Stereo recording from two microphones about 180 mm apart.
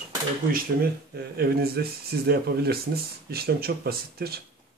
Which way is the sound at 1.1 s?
60° right (ahead or behind).